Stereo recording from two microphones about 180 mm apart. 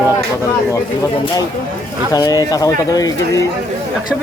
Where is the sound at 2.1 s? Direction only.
20° left (ahead or behind).